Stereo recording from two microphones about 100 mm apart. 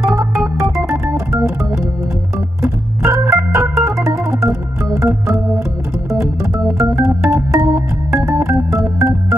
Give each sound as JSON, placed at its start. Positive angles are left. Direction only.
{"t": 0.0, "sound": "organ", "side_deg": -30}
{"t": 2.6, "sound": "organ", "side_deg": -25}
{"t": 6.8, "sound": "organ", "side_deg": -30}